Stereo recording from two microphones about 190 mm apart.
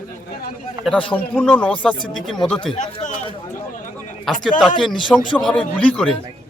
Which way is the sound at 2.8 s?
40° left (ahead or behind).